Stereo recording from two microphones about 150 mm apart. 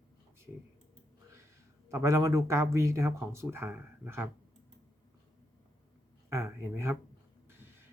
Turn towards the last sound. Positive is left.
turn(degrees=-15)  # may be behind; listen again after turning